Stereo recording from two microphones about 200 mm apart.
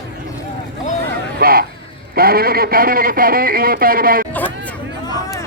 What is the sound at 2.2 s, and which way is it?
A man's voice, 50° right (ahead or behind).